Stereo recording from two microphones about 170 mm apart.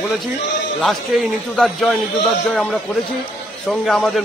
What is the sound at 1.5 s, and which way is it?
Speech, centre (ahead or behind).